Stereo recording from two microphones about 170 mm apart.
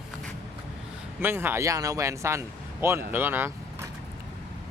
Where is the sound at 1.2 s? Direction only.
15° right (ahead or behind).